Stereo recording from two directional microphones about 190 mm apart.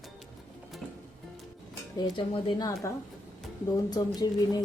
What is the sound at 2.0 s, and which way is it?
A woman's voice, 25° left (ahead or behind).